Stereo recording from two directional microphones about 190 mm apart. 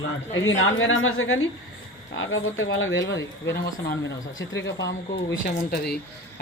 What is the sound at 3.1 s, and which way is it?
Speech, 70° left (ahead or behind).